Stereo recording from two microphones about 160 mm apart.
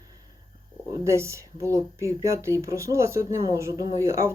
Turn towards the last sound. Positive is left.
turn(degrees=-20)  # may be behind; listen again after turning